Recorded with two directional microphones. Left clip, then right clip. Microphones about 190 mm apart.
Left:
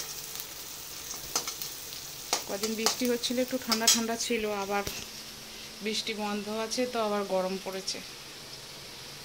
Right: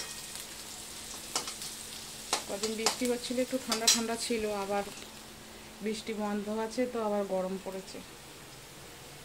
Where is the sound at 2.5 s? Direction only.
25° left (ahead or behind).